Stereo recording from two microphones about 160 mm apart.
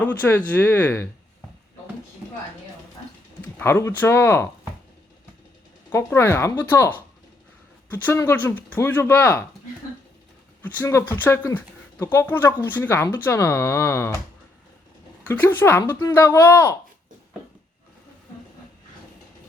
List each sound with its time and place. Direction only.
0.0 s speech: 10° left (ahead or behind)
3.6 s speech: 15° left (ahead or behind)
5.9 s speech: 15° left (ahead or behind)
10.6 s speech: 15° left (ahead or behind)
15.3 s speech: 10° left (ahead or behind)